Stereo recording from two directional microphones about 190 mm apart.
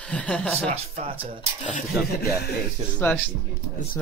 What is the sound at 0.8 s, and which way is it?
Speech, 35° right (ahead or behind).